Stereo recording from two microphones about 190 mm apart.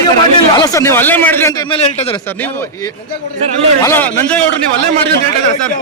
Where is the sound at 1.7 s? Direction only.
30° left (ahead or behind).